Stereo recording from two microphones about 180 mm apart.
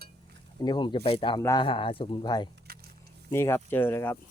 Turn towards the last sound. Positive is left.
turn(degrees=15)  # may be behind; listen again after turning